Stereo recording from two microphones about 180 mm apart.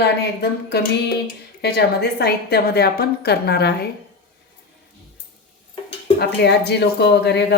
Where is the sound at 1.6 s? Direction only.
65° left (ahead or behind).